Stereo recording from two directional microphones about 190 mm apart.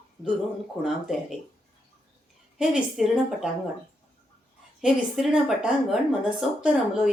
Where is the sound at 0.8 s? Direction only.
Centre (ahead or behind).